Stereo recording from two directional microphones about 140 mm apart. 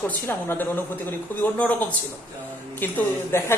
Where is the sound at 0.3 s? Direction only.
15° left (ahead or behind).